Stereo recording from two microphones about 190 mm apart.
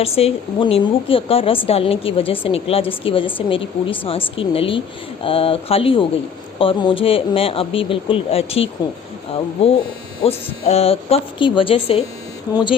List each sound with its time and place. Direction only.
0.2 s a woman's voice: 30° left (ahead or behind)